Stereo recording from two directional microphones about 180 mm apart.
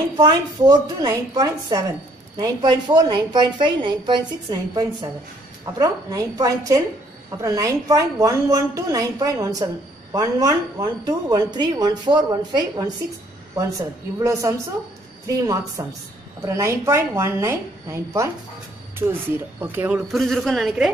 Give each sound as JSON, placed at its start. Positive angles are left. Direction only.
{"t": 0.2, "sound": "a woman's voice", "side_deg": -20}
{"t": 20.1, "sound": "a woman's voice", "side_deg": 0}